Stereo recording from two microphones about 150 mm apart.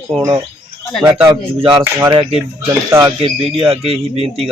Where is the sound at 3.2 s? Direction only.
40° right (ahead or behind).